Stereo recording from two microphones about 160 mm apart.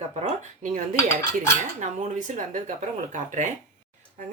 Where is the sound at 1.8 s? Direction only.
50° right (ahead or behind).